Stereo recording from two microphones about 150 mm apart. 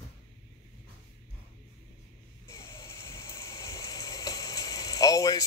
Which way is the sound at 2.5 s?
20° left (ahead or behind).